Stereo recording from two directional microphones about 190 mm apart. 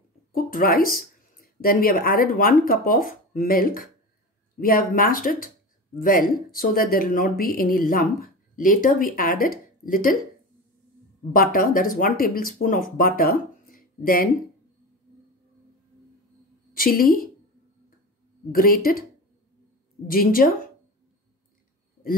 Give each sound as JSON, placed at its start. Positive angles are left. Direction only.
{"t": 0.3, "sound": "speech", "side_deg": 50}
{"t": 11.3, "sound": "speech", "side_deg": 50}
{"t": 16.7, "sound": "a woman's voice", "side_deg": 50}
{"t": 18.5, "sound": "speech", "side_deg": 50}
{"t": 20.1, "sound": "speech", "side_deg": 50}